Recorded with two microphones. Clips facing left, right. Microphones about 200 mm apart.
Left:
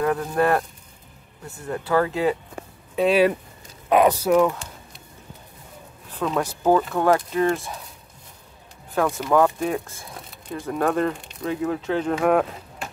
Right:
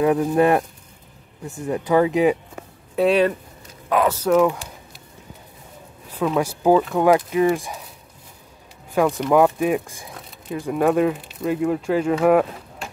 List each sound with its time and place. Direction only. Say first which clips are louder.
0.0 s speech: right 4 dB; 15° right (ahead or behind)
3.0 s speech: right 1 dB; centre (ahead or behind)
3.9 s speech: left 2 dB; 15° left (ahead or behind)
4.3 s a sound: right 1 dB; 5° right (ahead or behind)
6.0 s speech: right 3 dB; 10° right (ahead or behind)
8.9 s speech: right 3 dB; 15° right (ahead or behind)